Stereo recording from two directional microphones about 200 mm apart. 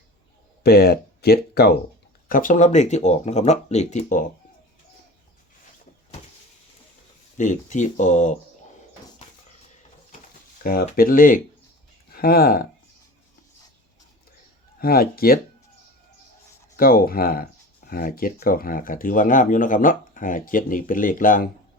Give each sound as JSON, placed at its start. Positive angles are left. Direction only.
{"t": 0.6, "sound": "speech", "side_deg": 50}
{"t": 7.3, "sound": "speech", "side_deg": 40}
{"t": 10.6, "sound": "speech", "side_deg": 45}
{"t": 14.8, "sound": "speech", "side_deg": 50}
{"t": 16.7, "sound": "speech", "side_deg": 45}